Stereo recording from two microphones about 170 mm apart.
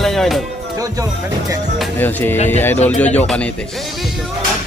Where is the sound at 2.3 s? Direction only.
40° left (ahead or behind).